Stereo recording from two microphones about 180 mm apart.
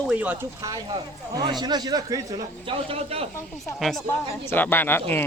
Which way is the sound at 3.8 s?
Centre (ahead or behind).